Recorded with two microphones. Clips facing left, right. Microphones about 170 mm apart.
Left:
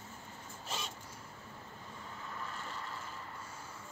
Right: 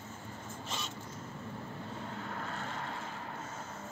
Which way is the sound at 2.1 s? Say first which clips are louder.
Right 5 dB; 65° right (ahead or behind).